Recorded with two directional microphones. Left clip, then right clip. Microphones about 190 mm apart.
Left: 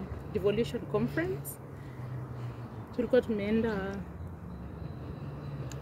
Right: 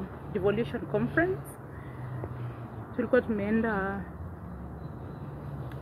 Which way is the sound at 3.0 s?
30° left (ahead or behind).